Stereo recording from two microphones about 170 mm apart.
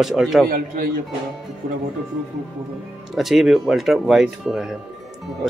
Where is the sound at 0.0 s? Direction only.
Centre (ahead or behind).